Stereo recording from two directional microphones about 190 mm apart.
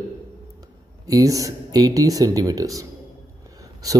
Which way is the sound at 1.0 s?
20° right (ahead or behind).